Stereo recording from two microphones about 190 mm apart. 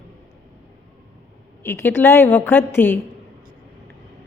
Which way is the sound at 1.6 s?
10° left (ahead or behind).